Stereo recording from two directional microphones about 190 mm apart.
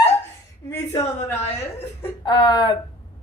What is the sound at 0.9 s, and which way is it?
A woman's voice, 15° left (ahead or behind).